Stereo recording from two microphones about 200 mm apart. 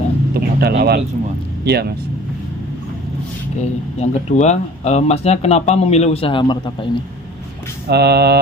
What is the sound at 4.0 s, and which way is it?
Speech, 35° left (ahead or behind).